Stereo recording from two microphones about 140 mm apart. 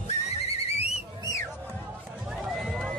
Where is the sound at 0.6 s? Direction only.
50° left (ahead or behind).